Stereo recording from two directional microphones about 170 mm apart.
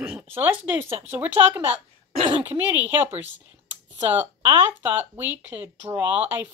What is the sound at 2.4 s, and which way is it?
Speech, 10° right (ahead or behind).